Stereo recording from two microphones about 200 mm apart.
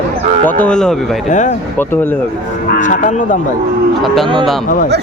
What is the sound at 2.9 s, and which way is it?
Speech, 40° left (ahead or behind).